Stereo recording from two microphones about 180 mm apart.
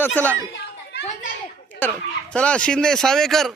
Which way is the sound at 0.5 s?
75° left (ahead or behind).